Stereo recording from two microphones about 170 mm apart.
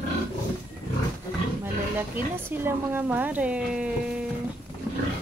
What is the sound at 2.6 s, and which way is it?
Speech, 10° right (ahead or behind).